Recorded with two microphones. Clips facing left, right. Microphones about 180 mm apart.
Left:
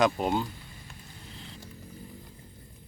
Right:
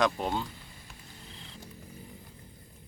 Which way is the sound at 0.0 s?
5° left (ahead or behind).